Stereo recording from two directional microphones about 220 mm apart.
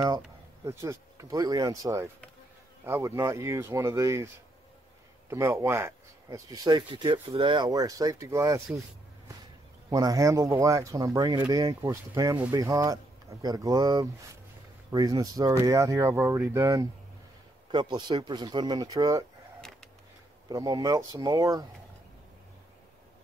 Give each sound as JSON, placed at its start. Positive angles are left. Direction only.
{"t": 0.7, "sound": "speech", "side_deg": -15}
{"t": 5.3, "sound": "speech", "side_deg": -10}
{"t": 9.8, "sound": "speech", "side_deg": -15}
{"t": 20.4, "sound": "speech", "side_deg": -15}